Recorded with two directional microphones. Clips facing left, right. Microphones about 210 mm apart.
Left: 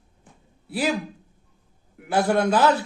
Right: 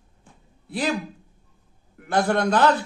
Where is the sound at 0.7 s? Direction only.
5° left (ahead or behind).